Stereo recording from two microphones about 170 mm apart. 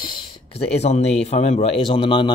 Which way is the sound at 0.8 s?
40° left (ahead or behind).